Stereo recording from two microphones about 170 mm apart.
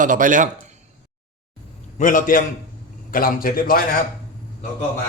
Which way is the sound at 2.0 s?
50° left (ahead or behind).